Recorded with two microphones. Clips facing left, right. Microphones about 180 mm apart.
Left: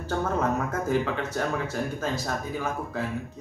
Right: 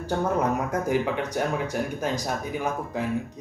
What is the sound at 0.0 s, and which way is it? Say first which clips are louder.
Speech: right 2 dB; 15° right (ahead or behind).